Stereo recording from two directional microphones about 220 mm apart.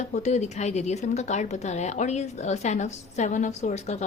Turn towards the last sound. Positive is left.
turn(degrees=30)  # may be behind; listen again after turning